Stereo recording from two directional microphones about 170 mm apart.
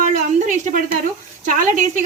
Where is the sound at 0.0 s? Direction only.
45° right (ahead or behind).